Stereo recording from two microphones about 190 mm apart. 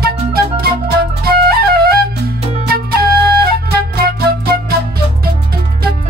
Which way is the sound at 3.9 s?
55° right (ahead or behind).